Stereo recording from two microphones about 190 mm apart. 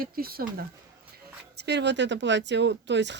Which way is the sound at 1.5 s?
65° right (ahead or behind).